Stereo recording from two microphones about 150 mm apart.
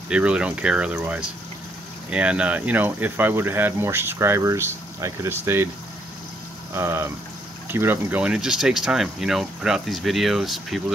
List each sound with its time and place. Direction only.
0.1 s speech: 5° right (ahead or behind)
6.7 s speech: 15° right (ahead or behind); by 10.8 s centre (ahead or behind)